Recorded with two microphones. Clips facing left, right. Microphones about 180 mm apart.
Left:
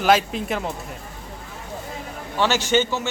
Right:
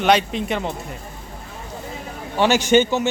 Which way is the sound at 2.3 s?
15° right (ahead or behind).